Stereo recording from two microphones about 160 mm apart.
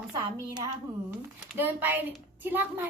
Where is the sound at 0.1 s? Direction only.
20° right (ahead or behind).